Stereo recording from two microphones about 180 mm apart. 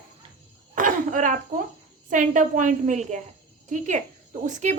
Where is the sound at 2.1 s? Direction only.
45° right (ahead or behind).